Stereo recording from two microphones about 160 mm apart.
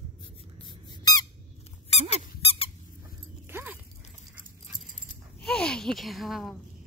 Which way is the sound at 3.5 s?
10° right (ahead or behind).